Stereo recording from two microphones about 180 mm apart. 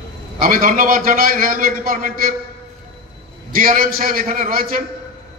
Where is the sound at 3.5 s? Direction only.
50° right (ahead or behind).